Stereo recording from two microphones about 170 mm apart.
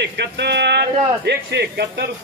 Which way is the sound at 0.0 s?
85° right.